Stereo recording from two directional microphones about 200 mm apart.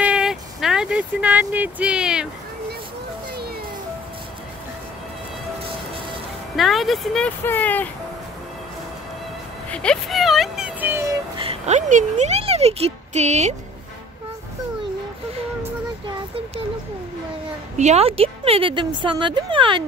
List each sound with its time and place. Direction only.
0.0 s a sound: 5° right (ahead or behind)
6.5 s speech: centre (ahead or behind)
9.7 s speech: 5° left (ahead or behind); by 11.1 s 10° right (ahead or behind)
11.3 s speech: 30° right (ahead or behind)
17.7 s speech: 35° right (ahead or behind)